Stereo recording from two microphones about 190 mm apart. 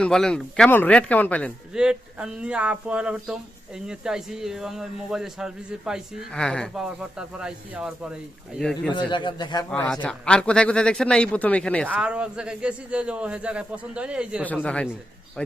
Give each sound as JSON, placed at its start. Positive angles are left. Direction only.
{"t": 0.0, "sound": "a man's voice", "side_deg": 5}
{"t": 1.7, "sound": "a man's voice", "side_deg": -5}
{"t": 9.0, "sound": "speech", "side_deg": 25}
{"t": 9.6, "sound": "a man's voice", "side_deg": 5}
{"t": 11.9, "sound": "a man's voice", "side_deg": -5}
{"t": 14.4, "sound": "a man's voice", "side_deg": 5}